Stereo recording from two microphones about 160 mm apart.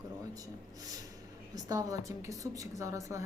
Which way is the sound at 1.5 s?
25° right (ahead or behind).